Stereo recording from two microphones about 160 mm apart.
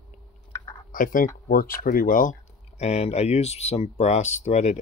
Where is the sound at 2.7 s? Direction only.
40° left (ahead or behind).